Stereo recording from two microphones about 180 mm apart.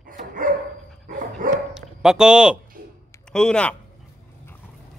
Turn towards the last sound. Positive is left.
turn(degrees=5)  # may be behind; listen again after turning